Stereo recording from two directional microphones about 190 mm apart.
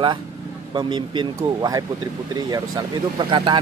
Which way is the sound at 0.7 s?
25° right (ahead or behind).